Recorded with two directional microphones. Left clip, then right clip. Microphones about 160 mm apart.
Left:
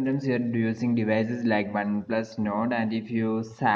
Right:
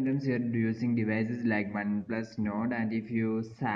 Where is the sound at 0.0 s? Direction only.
25° left (ahead or behind).